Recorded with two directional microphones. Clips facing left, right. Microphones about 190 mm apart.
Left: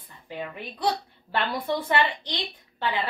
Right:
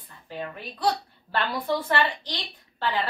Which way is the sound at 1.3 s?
20° left (ahead or behind).